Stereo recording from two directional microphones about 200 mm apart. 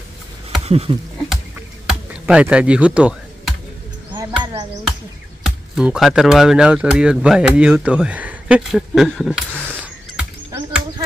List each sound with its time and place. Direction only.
0.7 s speech: 30° right (ahead or behind)
1.9 s computer keyboard: 5° right (ahead or behind)
4.1 s music: 20° right (ahead or behind)
5.4 s speech: 5° right (ahead or behind)
9.8 s a sound: 5° right (ahead or behind)